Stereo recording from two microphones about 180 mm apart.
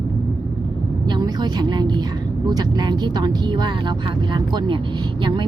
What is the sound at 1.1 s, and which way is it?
A woman's voice, 25° right (ahead or behind).